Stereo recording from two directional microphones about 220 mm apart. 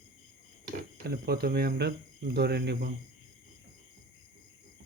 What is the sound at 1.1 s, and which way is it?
Speech, 45° right (ahead or behind).